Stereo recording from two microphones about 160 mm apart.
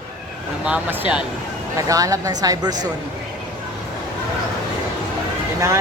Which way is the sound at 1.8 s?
20° right (ahead or behind).